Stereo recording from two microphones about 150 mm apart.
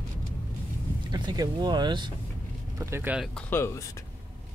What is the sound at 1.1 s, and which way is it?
Speech, 30° right (ahead or behind).